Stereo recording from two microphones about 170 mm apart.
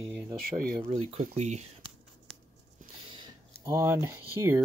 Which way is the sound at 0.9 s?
35° right (ahead or behind).